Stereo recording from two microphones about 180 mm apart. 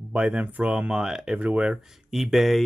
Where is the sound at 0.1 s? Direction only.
5° right (ahead or behind).